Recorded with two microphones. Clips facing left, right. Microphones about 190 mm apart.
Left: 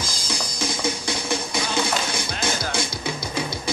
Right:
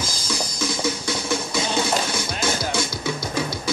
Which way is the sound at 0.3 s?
55° left (ahead or behind).